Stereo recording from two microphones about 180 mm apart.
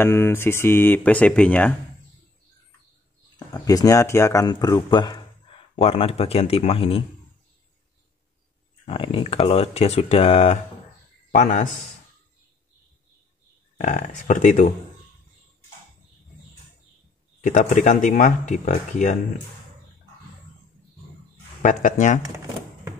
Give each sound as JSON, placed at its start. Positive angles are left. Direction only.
{"t": 0.0, "sound": "speech", "side_deg": 15}
{"t": 3.3, "sound": "speech", "side_deg": 20}
{"t": 5.8, "sound": "speech", "side_deg": 35}
{"t": 8.8, "sound": "speech", "side_deg": 30}
{"t": 13.7, "sound": "speech", "side_deg": 40}
{"t": 17.4, "sound": "speech", "side_deg": 45}
{"t": 21.6, "sound": "speech", "side_deg": 45}